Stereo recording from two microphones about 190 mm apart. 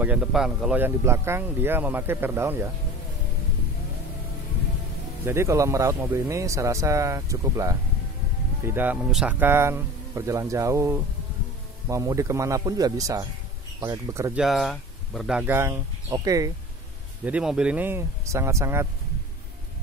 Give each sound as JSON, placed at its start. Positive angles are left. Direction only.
{"t": 0.0, "sound": "speech", "side_deg": -5}
{"t": 5.2, "sound": "speech", "side_deg": -15}
{"t": 14.4, "sound": "speech", "side_deg": 0}
{"t": 17.2, "sound": "speech", "side_deg": -5}